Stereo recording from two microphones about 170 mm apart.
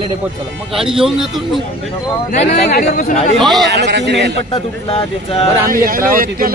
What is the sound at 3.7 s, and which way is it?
Speech, 90° right.